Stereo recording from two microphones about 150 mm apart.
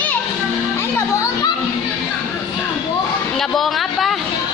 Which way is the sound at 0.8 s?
20° left (ahead or behind).